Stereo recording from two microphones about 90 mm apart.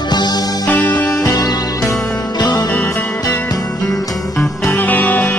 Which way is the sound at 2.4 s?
50° left (ahead or behind).